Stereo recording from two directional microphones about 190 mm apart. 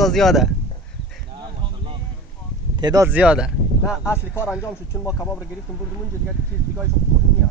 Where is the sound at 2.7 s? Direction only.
20° right (ahead or behind).